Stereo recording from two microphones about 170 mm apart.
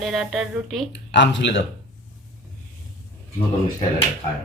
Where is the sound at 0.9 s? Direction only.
90° left.